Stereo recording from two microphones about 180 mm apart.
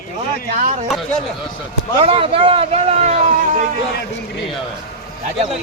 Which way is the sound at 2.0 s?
30° right (ahead or behind).